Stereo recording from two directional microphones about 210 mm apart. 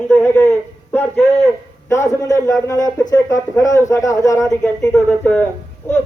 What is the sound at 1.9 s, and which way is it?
A man's voice, 15° left (ahead or behind).